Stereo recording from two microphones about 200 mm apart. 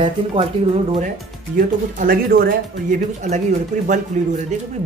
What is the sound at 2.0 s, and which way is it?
Speech, 45° right (ahead or behind).